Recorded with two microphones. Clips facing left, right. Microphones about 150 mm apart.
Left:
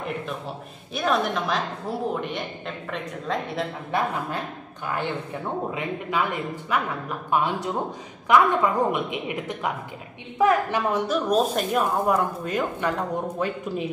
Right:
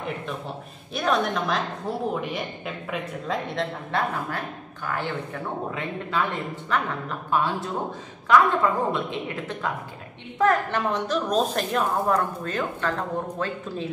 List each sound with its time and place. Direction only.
0.9 s a woman's voice: centre (ahead or behind)
5.7 s a woman's voice: 15° left (ahead or behind)